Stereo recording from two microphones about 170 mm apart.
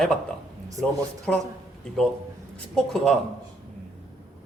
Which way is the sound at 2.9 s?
Centre (ahead or behind).